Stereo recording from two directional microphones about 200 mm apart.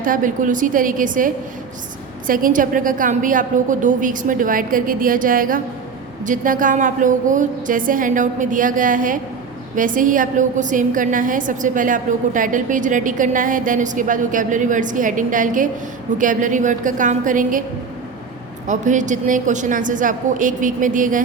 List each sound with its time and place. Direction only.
0.0 s a woman's voice: 40° right (ahead or behind)
18.7 s a woman's voice: 40° right (ahead or behind)